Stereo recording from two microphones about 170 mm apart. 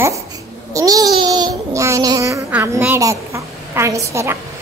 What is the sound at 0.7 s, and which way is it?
Babbling, 20° right (ahead or behind).